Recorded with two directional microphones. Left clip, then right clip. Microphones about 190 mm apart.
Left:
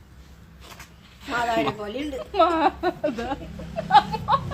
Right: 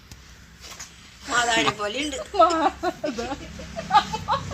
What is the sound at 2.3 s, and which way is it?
Speech, 20° right (ahead or behind).